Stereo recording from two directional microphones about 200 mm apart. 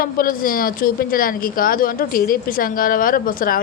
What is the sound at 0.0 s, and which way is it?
A woman's voice, 45° left (ahead or behind).